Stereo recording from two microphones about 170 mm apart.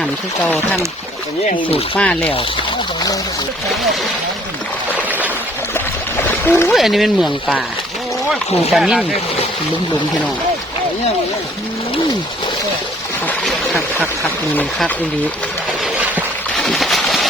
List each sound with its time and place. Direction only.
0.0 s speech: 10° left (ahead or behind)
2.0 s speech: 5° left (ahead or behind)
5.0 s a sound: 10° right (ahead or behind)
5.7 s splash: 15° left (ahead or behind)
6.7 s speech: centre (ahead or behind)
8.7 s speech: centre (ahead or behind)
13.2 s a sound: 10° left (ahead or behind)
14.5 s speech: 10° left (ahead or behind)
15.8 s a sound: centre (ahead or behind)